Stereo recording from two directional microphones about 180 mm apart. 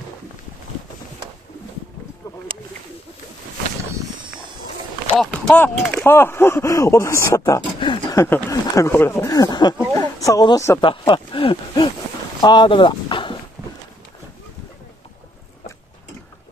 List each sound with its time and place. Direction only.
5.1 s speech: centre (ahead or behind); by 10.9 s 20° left (ahead or behind)
10.9 s speech: 30° left (ahead or behind)
12.4 s a sound: 25° left (ahead or behind)